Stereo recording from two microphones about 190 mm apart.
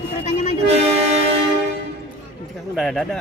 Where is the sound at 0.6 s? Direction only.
35° right (ahead or behind).